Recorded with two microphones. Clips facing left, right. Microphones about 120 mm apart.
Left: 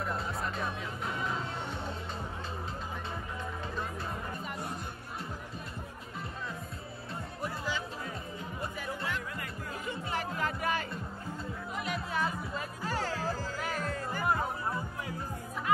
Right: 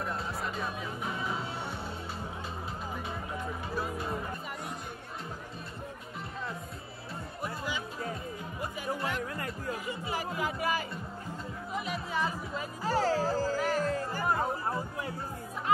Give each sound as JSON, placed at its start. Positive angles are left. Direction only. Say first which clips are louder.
{"t": 0.0, "sound": "music", "louder": "even", "side_deg": 0}
{"t": 9.8, "sound": "music", "louder": "right 1 dB", "side_deg": -5}
{"t": 12.8, "sound": "music", "louder": "right 7 dB", "side_deg": -40}
{"t": 13.6, "sound": "music", "louder": "right 6 dB", "side_deg": 0}
{"t": 13.8, "sound": "music", "louder": "right 2 dB", "side_deg": -35}